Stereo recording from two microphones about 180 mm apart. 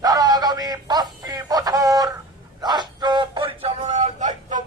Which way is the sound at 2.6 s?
25° right (ahead or behind).